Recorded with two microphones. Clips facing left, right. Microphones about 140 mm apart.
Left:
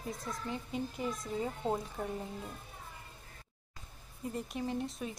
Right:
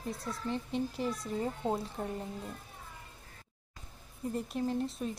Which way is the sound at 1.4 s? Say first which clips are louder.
Right 2 dB; 10° right (ahead or behind).